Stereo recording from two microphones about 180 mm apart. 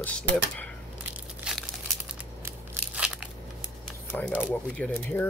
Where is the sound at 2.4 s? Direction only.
5° right (ahead or behind).